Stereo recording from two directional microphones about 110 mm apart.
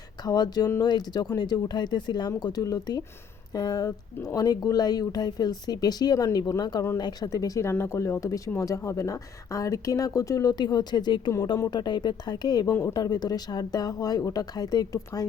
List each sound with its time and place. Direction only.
0.3 s speech: 35° left (ahead or behind)